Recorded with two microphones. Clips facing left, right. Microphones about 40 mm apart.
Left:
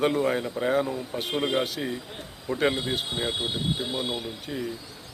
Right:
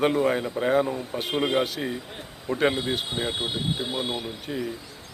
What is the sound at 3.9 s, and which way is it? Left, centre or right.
Speech, right.